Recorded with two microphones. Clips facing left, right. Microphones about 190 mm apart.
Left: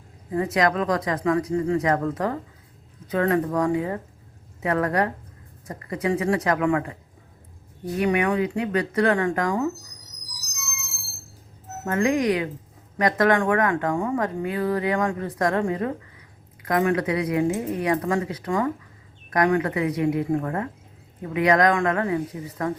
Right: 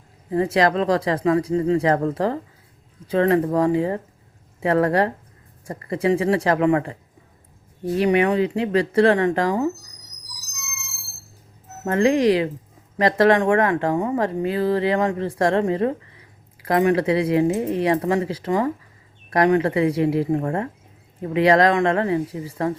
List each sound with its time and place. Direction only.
0.3 s speech: 30° right (ahead or behind)
7.9 s speech: 25° right (ahead or behind)
11.9 s speech: 30° right (ahead or behind)